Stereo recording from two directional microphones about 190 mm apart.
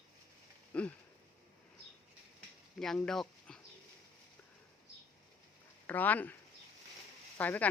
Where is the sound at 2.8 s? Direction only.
5° left (ahead or behind).